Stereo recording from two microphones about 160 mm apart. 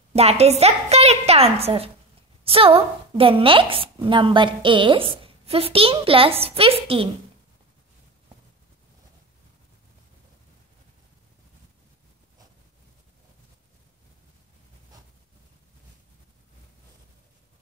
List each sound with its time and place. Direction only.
0.1 s a woman's voice: 40° right (ahead or behind)